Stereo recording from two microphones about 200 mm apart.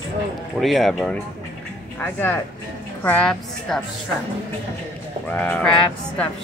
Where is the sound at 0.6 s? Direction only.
Centre (ahead or behind).